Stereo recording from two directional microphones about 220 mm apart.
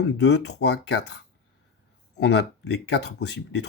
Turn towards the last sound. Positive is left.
turn(degrees=50)  # may be behind; listen again after turning